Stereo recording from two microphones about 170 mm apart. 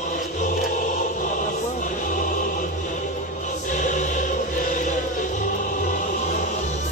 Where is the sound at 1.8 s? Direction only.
50° left (ahead or behind).